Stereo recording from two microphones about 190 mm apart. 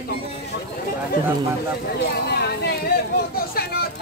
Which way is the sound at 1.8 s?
60° left (ahead or behind).